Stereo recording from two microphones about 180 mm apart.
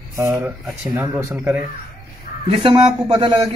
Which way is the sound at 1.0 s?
10° right (ahead or behind).